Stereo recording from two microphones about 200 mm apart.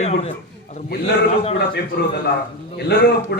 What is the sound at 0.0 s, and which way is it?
Speech, 35° left (ahead or behind).